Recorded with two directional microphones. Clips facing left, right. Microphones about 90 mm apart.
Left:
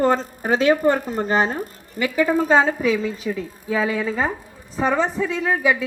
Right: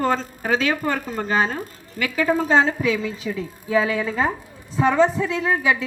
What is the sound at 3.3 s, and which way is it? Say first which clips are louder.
Speech: left 1 dB; 20° left (ahead or behind).